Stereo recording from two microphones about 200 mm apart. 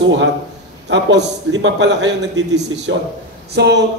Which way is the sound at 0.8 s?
60° right (ahead or behind).